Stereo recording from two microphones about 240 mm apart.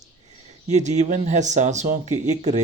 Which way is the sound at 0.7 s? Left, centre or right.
Right.